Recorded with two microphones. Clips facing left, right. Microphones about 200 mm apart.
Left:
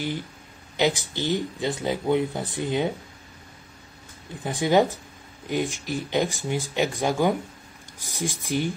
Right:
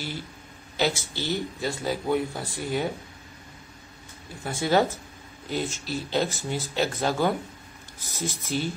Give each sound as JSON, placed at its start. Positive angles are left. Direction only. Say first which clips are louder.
{"t": 0.7, "sound": "speech", "louder": "left 3 dB", "side_deg": 15}
{"t": 4.4, "sound": "speech", "louder": "left 3 dB", "side_deg": 15}